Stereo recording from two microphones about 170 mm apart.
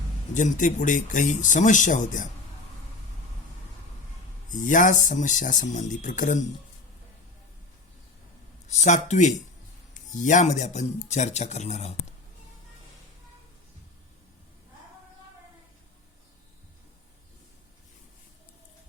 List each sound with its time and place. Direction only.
0.3 s speech: 50° left (ahead or behind)
4.4 s speech: 50° left (ahead or behind)
8.6 s speech: 45° left (ahead or behind)